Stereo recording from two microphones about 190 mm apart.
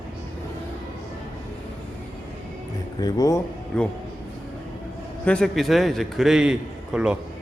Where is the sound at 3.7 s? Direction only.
5° left (ahead or behind).